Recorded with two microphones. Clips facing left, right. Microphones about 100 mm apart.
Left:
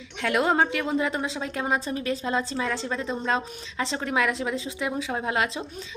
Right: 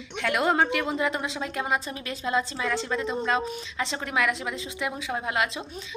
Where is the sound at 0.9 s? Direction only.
30° left (ahead or behind).